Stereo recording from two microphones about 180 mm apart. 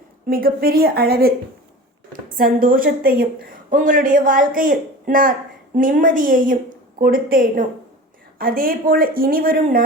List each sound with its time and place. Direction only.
0.3 s a woman's voice: 55° right (ahead or behind)